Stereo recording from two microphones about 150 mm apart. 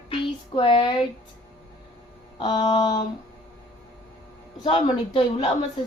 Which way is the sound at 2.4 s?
40° left (ahead or behind).